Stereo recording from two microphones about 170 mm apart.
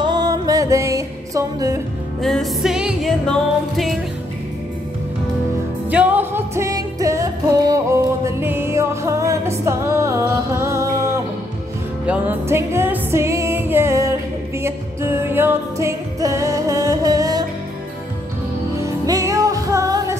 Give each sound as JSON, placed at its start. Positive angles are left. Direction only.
{"t": 0.0, "sound": "music", "side_deg": -25}
{"t": 2.2, "sound": "music", "side_deg": 0}
{"t": 5.9, "sound": "music", "side_deg": -10}
{"t": 18.8, "sound": "music", "side_deg": -20}